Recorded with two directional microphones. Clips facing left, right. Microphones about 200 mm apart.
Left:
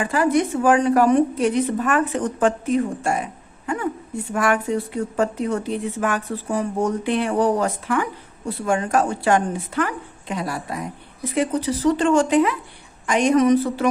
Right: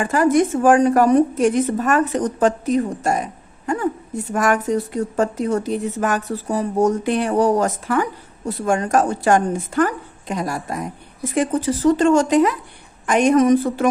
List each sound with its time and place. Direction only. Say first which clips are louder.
0.0 s a woman's voice: right 3 dB; 45° right (ahead or behind)
13.1 s speech: right 2 dB; 50° right (ahead or behind)